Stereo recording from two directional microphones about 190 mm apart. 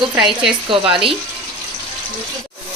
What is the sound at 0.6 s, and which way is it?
Speech, 25° right (ahead or behind).